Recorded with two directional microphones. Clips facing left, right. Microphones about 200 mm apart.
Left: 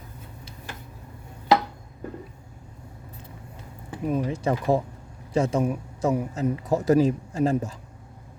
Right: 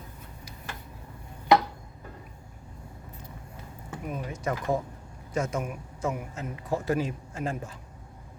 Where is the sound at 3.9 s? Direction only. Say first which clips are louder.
Left 9 dB; 30° left (ahead or behind).